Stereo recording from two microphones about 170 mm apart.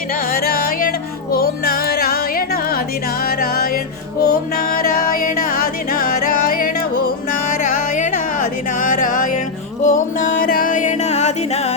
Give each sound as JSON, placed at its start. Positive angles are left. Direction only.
{"t": 0.3, "sound": "music", "side_deg": 60}